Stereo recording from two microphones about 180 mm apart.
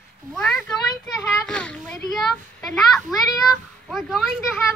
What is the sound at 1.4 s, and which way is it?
Children playing, 5° left (ahead or behind).